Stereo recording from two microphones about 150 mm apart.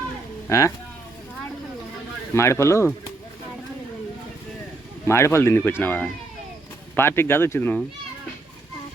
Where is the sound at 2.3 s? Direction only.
20° left (ahead or behind).